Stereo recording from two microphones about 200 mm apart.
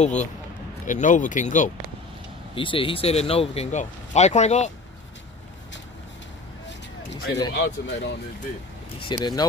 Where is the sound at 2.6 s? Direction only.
25° left (ahead or behind).